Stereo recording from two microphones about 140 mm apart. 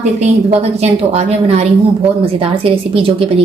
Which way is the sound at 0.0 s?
55° right (ahead or behind).